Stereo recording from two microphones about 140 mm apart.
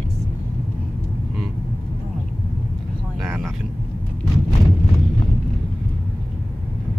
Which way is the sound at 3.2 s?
15° right (ahead or behind).